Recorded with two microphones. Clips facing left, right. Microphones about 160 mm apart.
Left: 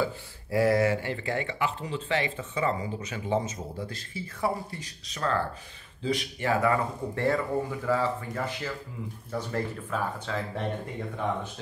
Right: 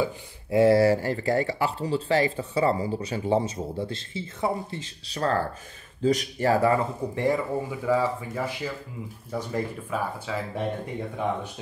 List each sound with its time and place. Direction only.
0.0 s speech: 25° right (ahead or behind)
5.2 s speech: 40° right (ahead or behind)
7.2 s speech: 15° right (ahead or behind)